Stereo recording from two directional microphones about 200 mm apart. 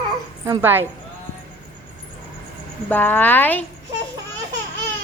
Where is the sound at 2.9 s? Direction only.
10° left (ahead or behind).